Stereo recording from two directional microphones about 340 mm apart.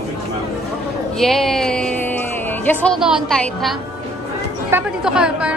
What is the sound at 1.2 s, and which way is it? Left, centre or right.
A woman's voice, centre.